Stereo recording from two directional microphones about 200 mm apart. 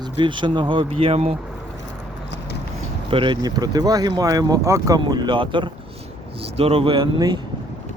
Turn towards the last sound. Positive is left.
turn(degrees=-20)  # may be behind; listen again after turning